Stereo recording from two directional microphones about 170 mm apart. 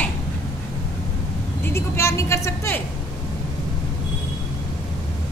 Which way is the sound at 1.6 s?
15° left (ahead or behind).